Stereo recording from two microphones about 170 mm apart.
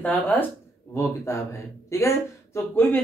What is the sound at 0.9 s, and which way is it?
Speech, 15° left (ahead or behind).